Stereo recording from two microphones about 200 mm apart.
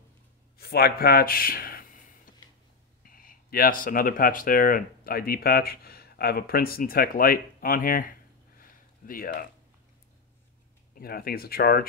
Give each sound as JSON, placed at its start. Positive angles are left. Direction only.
{"t": 0.6, "sound": "speech", "side_deg": 50}
{"t": 8.5, "sound": "a sound", "side_deg": 45}
{"t": 11.0, "sound": "speech", "side_deg": 50}